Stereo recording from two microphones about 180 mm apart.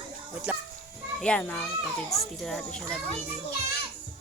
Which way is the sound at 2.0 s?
35° left (ahead or behind).